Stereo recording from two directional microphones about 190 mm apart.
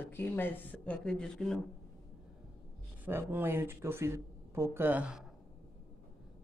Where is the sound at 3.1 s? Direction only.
10° right (ahead or behind).